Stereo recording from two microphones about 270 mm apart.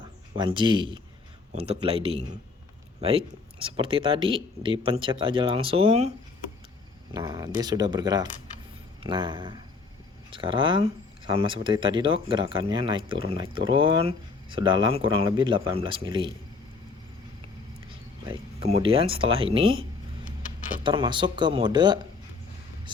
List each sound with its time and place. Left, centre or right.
0.3 s speech: centre
7.1 s speech: centre
17.8 s speech: right
20.2 s vehicle: left
20.8 s speech: centre